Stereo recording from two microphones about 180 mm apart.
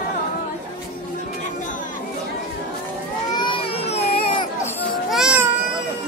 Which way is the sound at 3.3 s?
25° left (ahead or behind).